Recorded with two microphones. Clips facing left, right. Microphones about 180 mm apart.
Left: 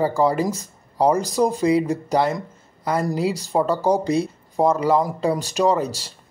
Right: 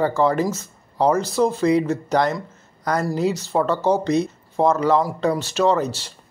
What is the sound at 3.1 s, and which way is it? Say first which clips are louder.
Speech: right 1 dB; 10° left (ahead or behind).